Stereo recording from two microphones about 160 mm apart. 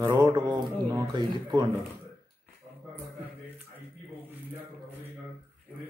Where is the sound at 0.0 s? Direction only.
30° right (ahead or behind).